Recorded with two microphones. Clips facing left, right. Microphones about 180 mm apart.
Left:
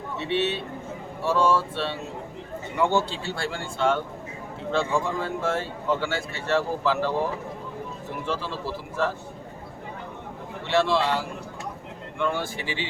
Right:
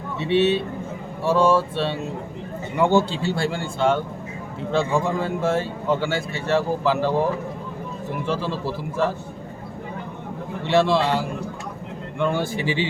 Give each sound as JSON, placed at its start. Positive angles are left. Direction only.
{"t": 0.3, "sound": "speech", "side_deg": -10}
{"t": 8.3, "sound": "speech", "side_deg": -15}
{"t": 10.7, "sound": "speech", "side_deg": -15}
{"t": 12.2, "sound": "speech", "side_deg": -15}